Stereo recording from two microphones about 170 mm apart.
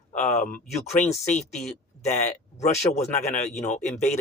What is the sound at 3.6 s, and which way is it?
Speech, 45° left (ahead or behind).